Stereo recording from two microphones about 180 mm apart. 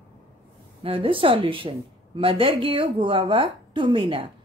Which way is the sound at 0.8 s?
30° right (ahead or behind).